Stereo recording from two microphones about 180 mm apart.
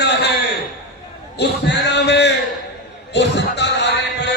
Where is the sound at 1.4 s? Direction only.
70° left (ahead or behind).